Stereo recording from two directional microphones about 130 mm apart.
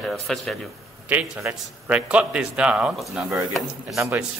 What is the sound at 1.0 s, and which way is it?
A man's voice, 10° right (ahead or behind).